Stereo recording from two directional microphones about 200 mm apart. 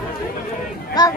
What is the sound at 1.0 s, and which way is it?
Speech, 20° left (ahead or behind).